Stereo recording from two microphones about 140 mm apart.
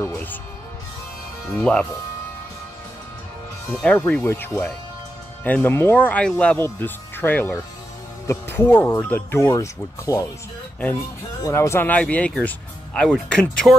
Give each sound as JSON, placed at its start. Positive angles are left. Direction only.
{"t": 0.1, "sound": "speech", "side_deg": 15}
{"t": 1.5, "sound": "speech", "side_deg": 5}
{"t": 3.7, "sound": "speech", "side_deg": 10}
{"t": 11.4, "sound": "speech", "side_deg": 20}